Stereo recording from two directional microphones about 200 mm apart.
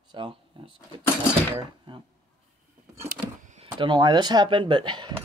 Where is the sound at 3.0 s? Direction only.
35° right (ahead or behind).